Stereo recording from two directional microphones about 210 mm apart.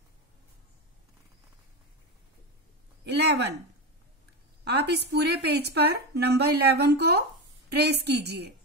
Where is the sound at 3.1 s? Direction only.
50° right (ahead or behind).